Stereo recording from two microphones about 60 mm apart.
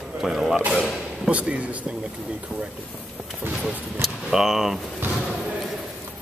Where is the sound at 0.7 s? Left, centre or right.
Centre.